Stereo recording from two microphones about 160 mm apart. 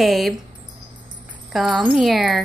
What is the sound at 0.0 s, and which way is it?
Speech, centre (ahead or behind).